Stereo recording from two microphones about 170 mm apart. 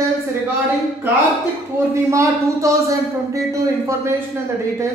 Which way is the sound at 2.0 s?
20° right (ahead or behind).